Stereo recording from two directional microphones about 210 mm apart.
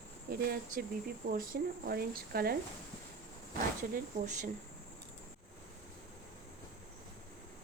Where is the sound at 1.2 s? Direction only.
45° right (ahead or behind).